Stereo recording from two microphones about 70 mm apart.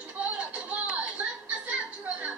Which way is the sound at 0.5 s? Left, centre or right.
Centre.